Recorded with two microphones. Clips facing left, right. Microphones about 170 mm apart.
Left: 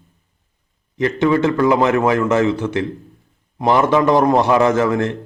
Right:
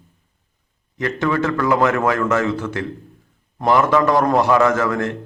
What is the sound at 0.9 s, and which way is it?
Speech, 20° left (ahead or behind).